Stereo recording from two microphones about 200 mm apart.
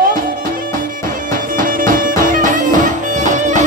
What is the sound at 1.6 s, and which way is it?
Music, 45° right (ahead or behind).